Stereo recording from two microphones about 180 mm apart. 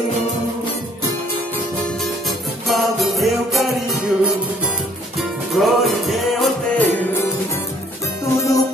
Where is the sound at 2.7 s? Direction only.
Centre (ahead or behind).